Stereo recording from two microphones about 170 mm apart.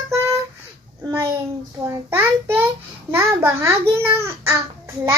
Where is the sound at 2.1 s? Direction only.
15° right (ahead or behind).